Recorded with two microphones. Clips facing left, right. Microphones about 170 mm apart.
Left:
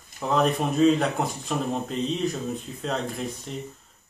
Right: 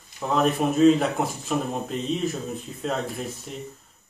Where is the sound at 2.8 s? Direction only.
5° right (ahead or behind).